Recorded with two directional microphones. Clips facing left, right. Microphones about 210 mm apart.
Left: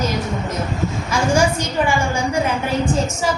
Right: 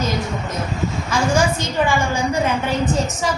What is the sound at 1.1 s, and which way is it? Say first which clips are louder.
Speech: left 1 dB; 10° left (ahead or behind).